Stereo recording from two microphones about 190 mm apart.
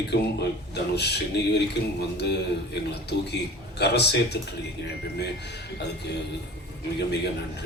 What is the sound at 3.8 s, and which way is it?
Speech, 60° left (ahead or behind).